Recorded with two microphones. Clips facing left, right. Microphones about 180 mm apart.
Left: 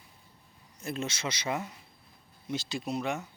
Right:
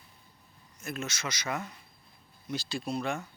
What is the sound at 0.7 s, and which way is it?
A man's voice, 30° left (ahead or behind).